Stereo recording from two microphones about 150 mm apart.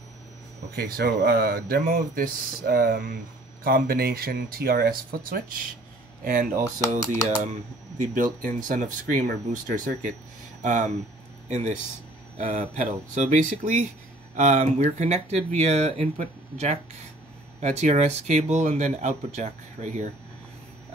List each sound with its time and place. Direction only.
0.7 s speech: 85° right; by 6.6 s 65° right (ahead or behind)
6.6 s speech: 20° left (ahead or behind)
8.0 s speech: 60° right (ahead or behind)